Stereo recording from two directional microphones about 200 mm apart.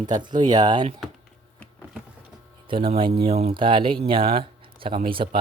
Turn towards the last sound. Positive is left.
turn(degrees=-25)  # may be behind; listen again after turning